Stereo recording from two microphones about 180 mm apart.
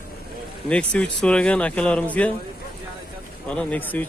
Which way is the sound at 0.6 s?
5° left (ahead or behind).